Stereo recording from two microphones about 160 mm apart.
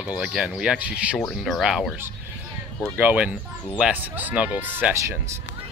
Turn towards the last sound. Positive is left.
turn(degrees=-10)  # may be behind; listen again after turning